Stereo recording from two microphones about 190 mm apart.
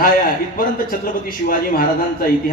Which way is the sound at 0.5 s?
50° left (ahead or behind).